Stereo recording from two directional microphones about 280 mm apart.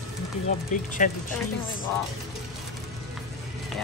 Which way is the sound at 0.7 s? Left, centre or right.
Left.